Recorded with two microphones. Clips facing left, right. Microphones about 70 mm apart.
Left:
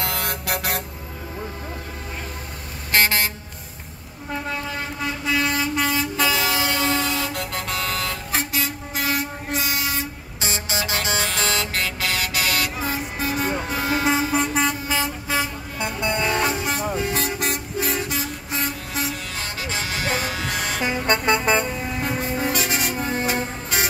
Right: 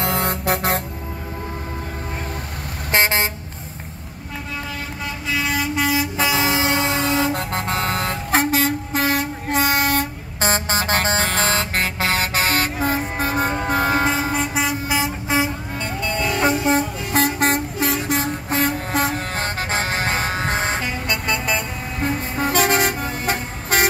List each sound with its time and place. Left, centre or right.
0.0 s music: right
2.9 s vehicle: right
5.3 s vehicle: centre
6.1 s vehicle: right
14.3 s vehicle: centre
14.9 s vehicle: centre
15.8 s music: left
16.4 s music: right
17.1 s vehicle: right
21.1 s music: left
22.4 s music: right
23.2 s vehicle: right